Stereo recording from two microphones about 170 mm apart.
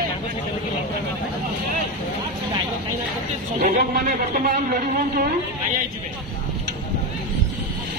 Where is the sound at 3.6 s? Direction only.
50° right (ahead or behind).